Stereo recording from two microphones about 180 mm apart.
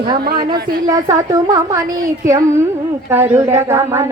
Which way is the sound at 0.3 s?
55° right (ahead or behind).